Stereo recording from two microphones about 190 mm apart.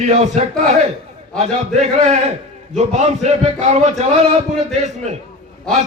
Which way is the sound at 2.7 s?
35° right (ahead or behind).